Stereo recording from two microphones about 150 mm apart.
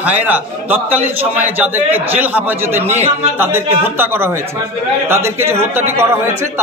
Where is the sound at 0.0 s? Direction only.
10° right (ahead or behind).